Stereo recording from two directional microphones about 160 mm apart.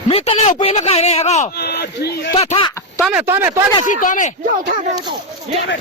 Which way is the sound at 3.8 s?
55° left (ahead or behind).